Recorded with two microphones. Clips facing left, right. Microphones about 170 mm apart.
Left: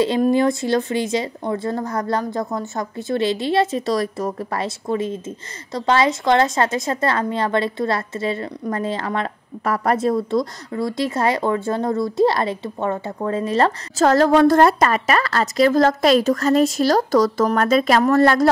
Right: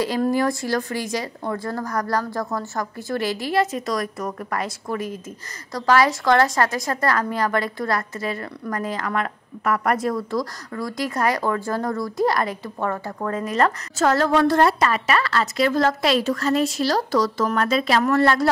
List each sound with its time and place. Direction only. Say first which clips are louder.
0.0 s a woman's voice: left 4 dB; 25° left (ahead or behind); by 18.5 s 40° left (ahead or behind)